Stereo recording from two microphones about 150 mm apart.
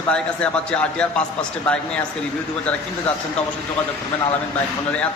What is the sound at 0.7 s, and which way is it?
A man's voice, 5° left (ahead or behind).